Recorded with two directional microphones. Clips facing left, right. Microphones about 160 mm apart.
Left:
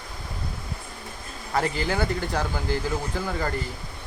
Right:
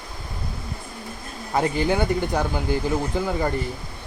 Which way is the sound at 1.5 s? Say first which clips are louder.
Right 4 dB; 20° right (ahead or behind).